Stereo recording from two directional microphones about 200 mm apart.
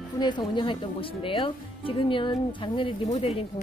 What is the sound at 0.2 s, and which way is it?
Speech, 20° left (ahead or behind).